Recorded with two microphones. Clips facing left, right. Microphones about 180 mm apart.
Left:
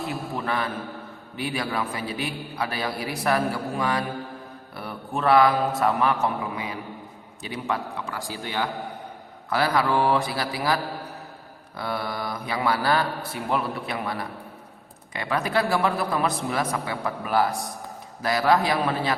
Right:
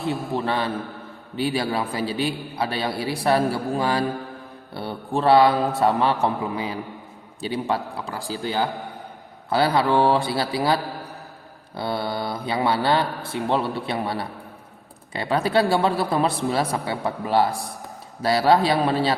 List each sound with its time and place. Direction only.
0.1 s a man's voice: 30° right (ahead or behind)
11.8 s a man's voice: 30° right (ahead or behind)